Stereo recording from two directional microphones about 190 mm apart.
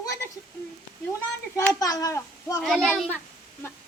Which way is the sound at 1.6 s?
15° left (ahead or behind).